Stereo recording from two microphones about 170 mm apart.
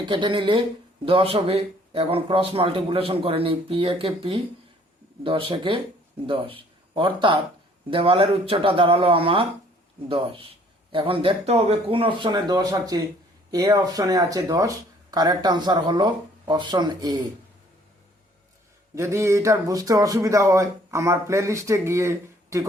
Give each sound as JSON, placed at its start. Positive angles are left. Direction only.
{"t": 0.0, "sound": "speech", "side_deg": -30}
{"t": 18.9, "sound": "speech", "side_deg": -15}